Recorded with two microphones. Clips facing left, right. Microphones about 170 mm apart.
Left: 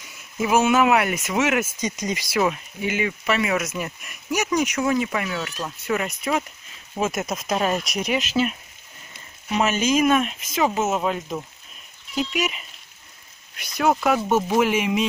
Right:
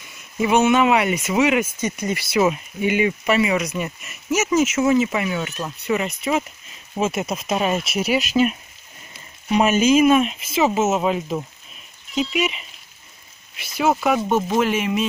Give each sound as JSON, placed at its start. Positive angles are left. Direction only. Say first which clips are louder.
{"t": 0.4, "sound": "speech", "louder": "right 2 dB", "side_deg": 0}
{"t": 1.8, "sound": "speech", "louder": "right 2 dB", "side_deg": 15}
{"t": 2.5, "sound": "speech", "louder": "right 5 dB", "side_deg": -15}
{"t": 3.4, "sound": "speech", "louder": "right 3 dB", "side_deg": 0}
{"t": 14.3, "sound": "speech", "louder": "even", "side_deg": 10}